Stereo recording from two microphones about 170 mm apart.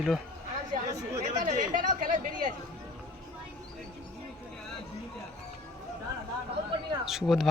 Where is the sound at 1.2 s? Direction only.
45° right (ahead or behind).